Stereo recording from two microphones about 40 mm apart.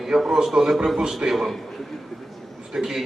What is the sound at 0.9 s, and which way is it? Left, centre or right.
Speech, centre.